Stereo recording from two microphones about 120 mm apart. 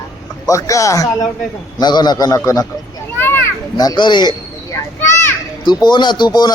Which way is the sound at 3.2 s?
20° left (ahead or behind).